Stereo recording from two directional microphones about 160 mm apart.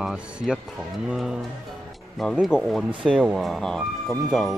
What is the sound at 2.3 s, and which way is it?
Speech, 5° right (ahead or behind).